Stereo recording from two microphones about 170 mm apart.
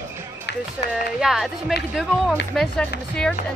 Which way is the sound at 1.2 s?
5° right (ahead or behind).